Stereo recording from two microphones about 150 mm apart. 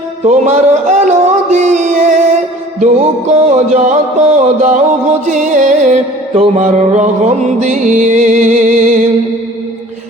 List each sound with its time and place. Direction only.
0.3 s music: 50° right (ahead or behind)